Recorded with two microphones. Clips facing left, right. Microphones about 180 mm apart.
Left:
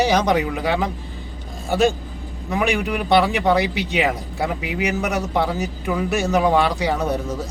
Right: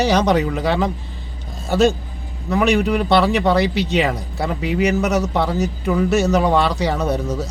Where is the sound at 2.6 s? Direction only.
10° left (ahead or behind).